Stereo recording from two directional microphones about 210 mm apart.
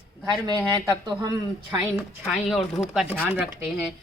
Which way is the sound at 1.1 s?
15° right (ahead or behind).